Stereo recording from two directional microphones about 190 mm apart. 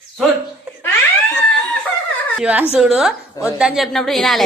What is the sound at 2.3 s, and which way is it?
A woman's voice, 5° right (ahead or behind).